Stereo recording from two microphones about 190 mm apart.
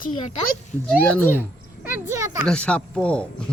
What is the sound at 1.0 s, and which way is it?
Speech, 10° left (ahead or behind).